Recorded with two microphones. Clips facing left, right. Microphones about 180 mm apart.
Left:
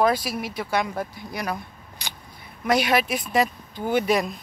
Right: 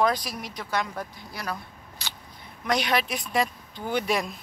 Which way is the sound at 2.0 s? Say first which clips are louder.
Left 2 dB; 15° left (ahead or behind).